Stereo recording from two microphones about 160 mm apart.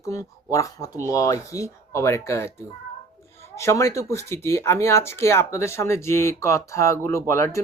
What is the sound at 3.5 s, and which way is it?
Speech, 20° left (ahead or behind).